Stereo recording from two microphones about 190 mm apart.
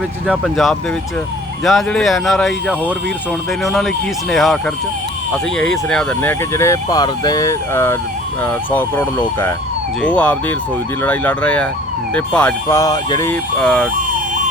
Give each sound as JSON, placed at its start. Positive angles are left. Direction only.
{"t": 0.3, "sound": "speech", "side_deg": 0}
{"t": 6.5, "sound": "speech", "side_deg": 15}
{"t": 13.3, "sound": "speech", "side_deg": 5}